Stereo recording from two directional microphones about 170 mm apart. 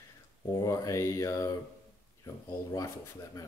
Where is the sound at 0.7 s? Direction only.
20° left (ahead or behind).